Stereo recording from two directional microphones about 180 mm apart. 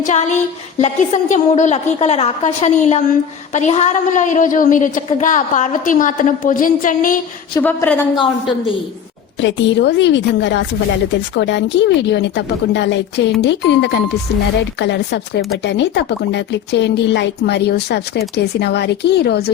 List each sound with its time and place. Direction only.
0.0 s a woman's voice: 40° left (ahead or behind)
7.6 s a woman's voice: 10° left (ahead or behind)
8.1 s a woman's voice: 30° left (ahead or behind)
9.4 s speech: 90° left; by 19.5 s 60° left (ahead or behind)